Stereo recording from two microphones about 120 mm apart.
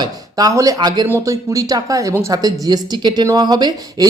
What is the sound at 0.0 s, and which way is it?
Speech, 30° right (ahead or behind).